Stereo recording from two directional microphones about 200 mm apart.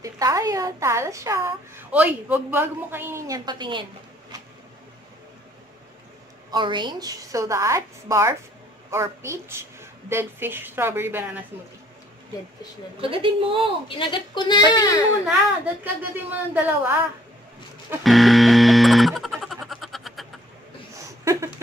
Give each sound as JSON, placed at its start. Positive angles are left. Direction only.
{"t": 0.0, "sound": "a woman's voice", "side_deg": -15}
{"t": 6.5, "sound": "a woman's voice", "side_deg": -20}
{"t": 13.0, "sound": "a woman's voice", "side_deg": -25}
{"t": 13.8, "sound": "speech", "side_deg": 25}
{"t": 15.2, "sound": "a woman's voice", "side_deg": -5}
{"t": 18.0, "sound": "a sound", "side_deg": 0}
{"t": 21.2, "sound": "a sound", "side_deg": -15}